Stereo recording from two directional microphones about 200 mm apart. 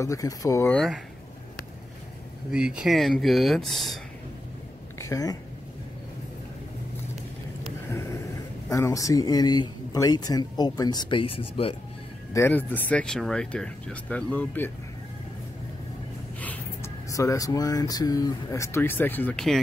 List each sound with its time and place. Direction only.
0.0 s speech: 15° left (ahead or behind)
2.5 s speech: 5° right (ahead or behind)
4.9 s a woman's voice: 15° left (ahead or behind)
8.6 s speech: 15° left (ahead or behind)
12.4 s speech: 10° left (ahead or behind)
16.3 s speech: 10° left (ahead or behind)